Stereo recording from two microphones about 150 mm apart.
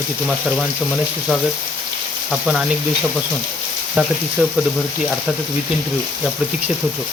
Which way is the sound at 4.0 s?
10° right (ahead or behind).